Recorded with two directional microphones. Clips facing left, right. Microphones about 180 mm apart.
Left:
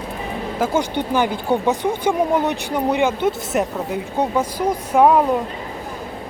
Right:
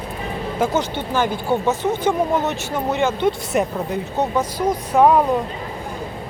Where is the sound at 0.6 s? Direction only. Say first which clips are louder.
Left 1 dB; 10° left (ahead or behind).